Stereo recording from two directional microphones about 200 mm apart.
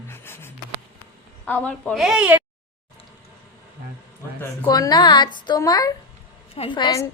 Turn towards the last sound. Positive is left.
turn(degrees=20)  # may be behind; listen again after turning